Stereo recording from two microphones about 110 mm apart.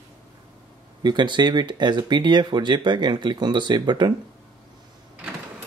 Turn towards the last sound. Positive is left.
turn(degrees=-40)  # may be behind; listen again after turning